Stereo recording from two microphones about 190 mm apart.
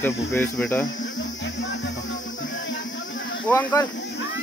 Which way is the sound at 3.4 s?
10° left (ahead or behind).